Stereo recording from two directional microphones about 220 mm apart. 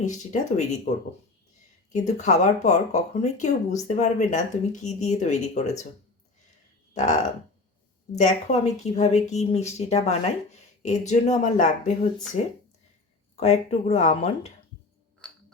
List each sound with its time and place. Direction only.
0.0 s speech: 30° left (ahead or behind)
8.1 s speech: 30° left (ahead or behind)